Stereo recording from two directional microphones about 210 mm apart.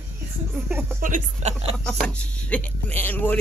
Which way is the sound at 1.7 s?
5° left (ahead or behind).